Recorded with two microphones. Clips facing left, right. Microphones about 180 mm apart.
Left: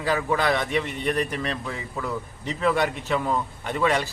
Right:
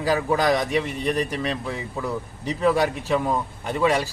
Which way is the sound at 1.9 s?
10° right (ahead or behind).